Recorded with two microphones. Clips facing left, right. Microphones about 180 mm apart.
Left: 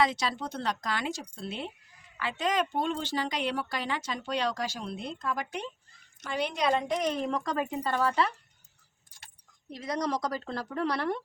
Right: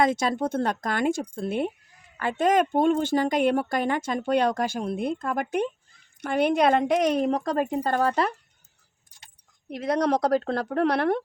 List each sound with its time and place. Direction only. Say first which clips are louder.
0.0 s a woman's voice: right 6 dB; 50° right (ahead or behind); by 7.2 s 65° right (ahead or behind)
7.2 s a woman's voice: right 6 dB; 40° right (ahead or behind)
9.6 s speech: right 8 dB; 60° right (ahead or behind)